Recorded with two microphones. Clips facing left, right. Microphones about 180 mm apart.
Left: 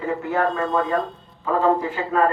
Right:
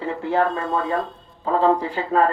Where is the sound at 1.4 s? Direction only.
30° right (ahead or behind).